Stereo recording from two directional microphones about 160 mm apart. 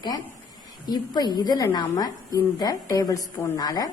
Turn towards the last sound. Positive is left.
turn(degrees=25)  # may be behind; listen again after turning